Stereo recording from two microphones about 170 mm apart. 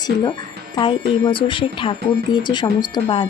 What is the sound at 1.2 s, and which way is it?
Speech, 30° left (ahead or behind).